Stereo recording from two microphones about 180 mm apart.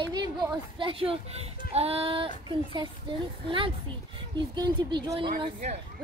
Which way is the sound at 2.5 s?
30° right (ahead or behind).